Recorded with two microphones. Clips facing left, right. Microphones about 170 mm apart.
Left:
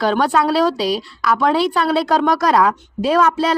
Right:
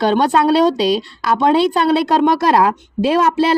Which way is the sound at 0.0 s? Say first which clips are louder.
Right 3 dB; 25° right (ahead or behind).